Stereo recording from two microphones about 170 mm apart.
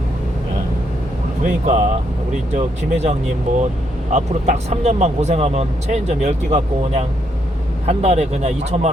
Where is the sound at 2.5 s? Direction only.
40° right (ahead or behind).